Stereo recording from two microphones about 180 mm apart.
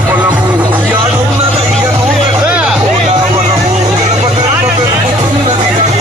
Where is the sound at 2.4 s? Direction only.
5° right (ahead or behind).